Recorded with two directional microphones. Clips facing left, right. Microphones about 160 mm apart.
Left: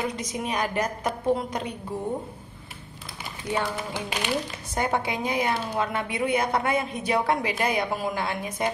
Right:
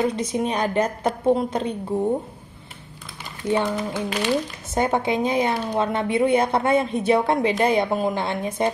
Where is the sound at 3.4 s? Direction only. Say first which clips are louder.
Right 6 dB; 30° right (ahead or behind).